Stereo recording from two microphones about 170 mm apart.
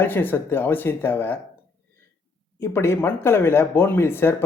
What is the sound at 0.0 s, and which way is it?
Speech, 10° left (ahead or behind).